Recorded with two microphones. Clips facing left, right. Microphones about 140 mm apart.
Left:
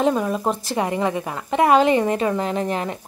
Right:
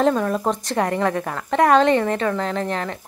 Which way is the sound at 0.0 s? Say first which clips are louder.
Right 1 dB; 5° left (ahead or behind).